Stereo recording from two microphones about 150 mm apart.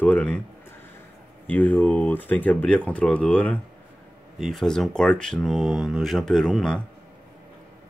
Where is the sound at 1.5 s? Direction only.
10° left (ahead or behind).